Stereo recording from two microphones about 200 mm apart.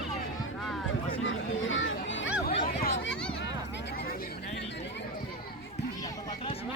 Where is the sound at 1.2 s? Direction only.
75° left (ahead or behind).